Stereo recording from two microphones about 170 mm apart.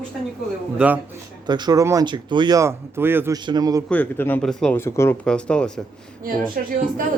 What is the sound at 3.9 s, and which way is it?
Speech, 10° left (ahead or behind).